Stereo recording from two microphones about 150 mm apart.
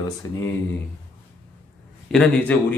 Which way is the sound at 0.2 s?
25° left (ahead or behind).